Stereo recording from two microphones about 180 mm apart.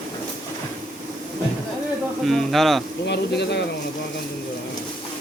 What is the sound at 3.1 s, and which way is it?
Speech, 70° left (ahead or behind).